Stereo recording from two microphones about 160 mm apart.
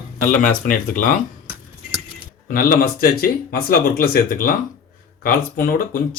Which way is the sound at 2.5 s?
65° left (ahead or behind).